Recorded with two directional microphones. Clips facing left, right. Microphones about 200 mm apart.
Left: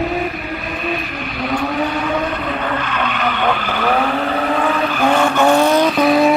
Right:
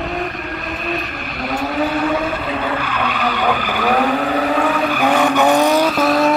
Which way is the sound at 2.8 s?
10° right (ahead or behind).